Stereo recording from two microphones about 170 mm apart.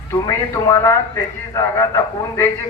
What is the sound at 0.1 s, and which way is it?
A man's voice, 15° left (ahead or behind).